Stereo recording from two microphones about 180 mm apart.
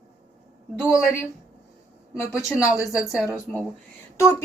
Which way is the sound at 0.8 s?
5° right (ahead or behind).